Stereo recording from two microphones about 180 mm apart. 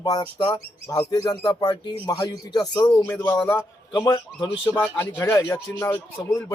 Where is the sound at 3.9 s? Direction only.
25° left (ahead or behind).